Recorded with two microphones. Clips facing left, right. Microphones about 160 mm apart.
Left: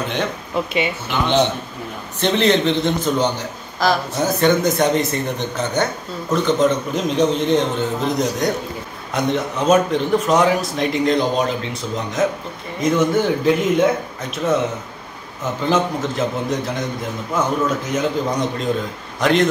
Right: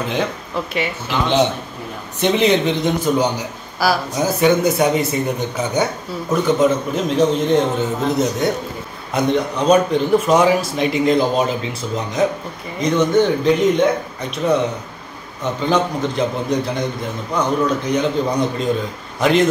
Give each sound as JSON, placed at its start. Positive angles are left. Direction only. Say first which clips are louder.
{"t": 0.5, "sound": "speech", "louder": "left 2 dB", "side_deg": 15}
{"t": 1.0, "sound": "a man's voice", "louder": "right 2 dB", "side_deg": 0}
{"t": 15.7, "sound": "a man's voice", "louder": "right 1 dB", "side_deg": 0}